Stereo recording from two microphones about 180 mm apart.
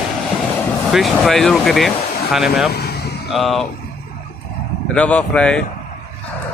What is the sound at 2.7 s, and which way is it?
Vehicle, 60° left (ahead or behind).